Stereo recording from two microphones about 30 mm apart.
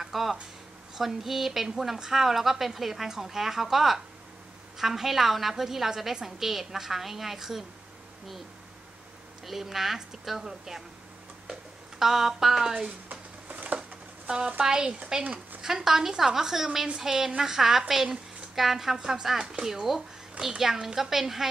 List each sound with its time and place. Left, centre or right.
0.0 s a child's voice: centre
9.5 s a child's voice: centre
10.4 s speech: centre
12.0 s a child's voice: centre
13.1 s a sound: right
14.2 s speech: right
15.6 s a child's voice: centre
18.9 s a child's voice: right